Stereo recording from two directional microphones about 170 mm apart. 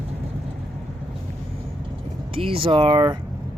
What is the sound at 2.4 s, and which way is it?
Speech, 30° right (ahead or behind).